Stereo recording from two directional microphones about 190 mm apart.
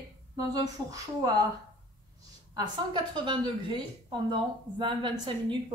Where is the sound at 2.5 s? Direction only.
20° right (ahead or behind).